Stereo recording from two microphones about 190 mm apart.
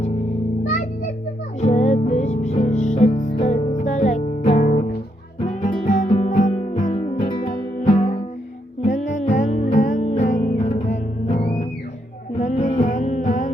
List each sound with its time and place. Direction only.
1.6 s music: 35° left (ahead or behind)